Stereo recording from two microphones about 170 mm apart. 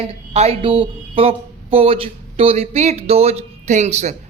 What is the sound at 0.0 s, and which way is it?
Speech, 35° right (ahead or behind).